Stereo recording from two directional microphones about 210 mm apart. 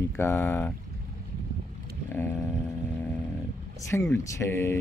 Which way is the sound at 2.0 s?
10° left (ahead or behind).